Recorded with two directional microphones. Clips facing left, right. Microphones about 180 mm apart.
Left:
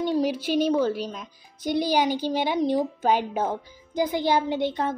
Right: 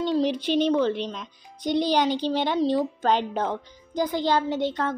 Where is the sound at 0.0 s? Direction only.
10° left (ahead or behind).